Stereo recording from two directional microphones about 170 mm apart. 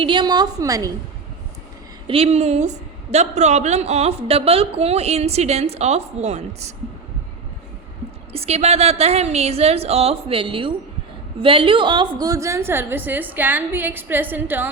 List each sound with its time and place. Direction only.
0.0 s a woman's voice: 25° right (ahead or behind)
2.0 s a woman's voice: 35° right (ahead or behind)
8.3 s a woman's voice: 35° right (ahead or behind); by 14.7 s 10° right (ahead or behind)